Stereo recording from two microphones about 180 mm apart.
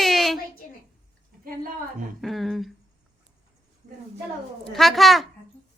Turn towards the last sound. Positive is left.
turn(degrees=0)  # may be behind; listen again after turning